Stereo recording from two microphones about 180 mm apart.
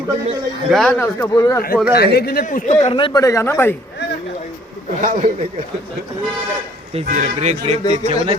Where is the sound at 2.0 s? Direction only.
60° left (ahead or behind).